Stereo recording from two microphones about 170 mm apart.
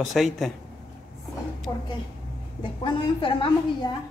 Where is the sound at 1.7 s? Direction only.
20° left (ahead or behind).